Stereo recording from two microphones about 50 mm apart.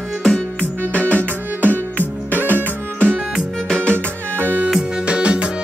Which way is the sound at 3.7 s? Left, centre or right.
Left.